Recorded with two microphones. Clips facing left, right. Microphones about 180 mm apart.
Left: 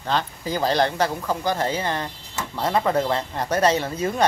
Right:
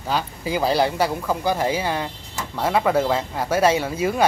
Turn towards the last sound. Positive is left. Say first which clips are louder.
# right 2 dB
turn(degrees=-10)  # may be behind; listen again after turning